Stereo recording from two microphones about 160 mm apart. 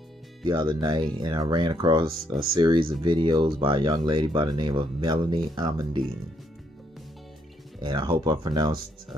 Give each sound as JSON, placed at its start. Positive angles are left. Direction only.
{"t": 0.5, "sound": "speech", "side_deg": -25}
{"t": 7.8, "sound": "speech", "side_deg": -30}